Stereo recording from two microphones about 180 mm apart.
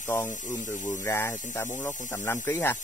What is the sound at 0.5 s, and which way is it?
Speech, 10° left (ahead or behind).